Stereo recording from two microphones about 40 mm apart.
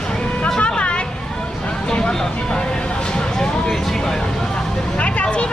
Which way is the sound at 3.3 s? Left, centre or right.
Centre.